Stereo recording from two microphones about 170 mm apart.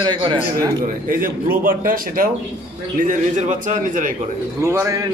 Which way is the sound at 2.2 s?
55° right (ahead or behind).